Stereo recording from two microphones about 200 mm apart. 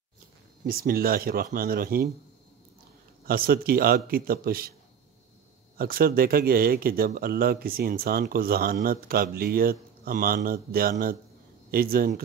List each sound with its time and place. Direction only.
0.7 s speech: 45° right (ahead or behind)
3.3 s speech: 45° right (ahead or behind)
5.8 s speech: 45° right (ahead or behind)